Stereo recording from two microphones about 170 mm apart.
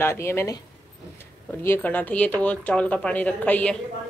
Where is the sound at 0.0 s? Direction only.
15° left (ahead or behind).